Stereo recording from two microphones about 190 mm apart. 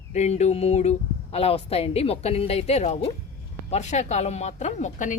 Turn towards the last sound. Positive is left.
turn(degrees=40)  # may be behind; listen again after turning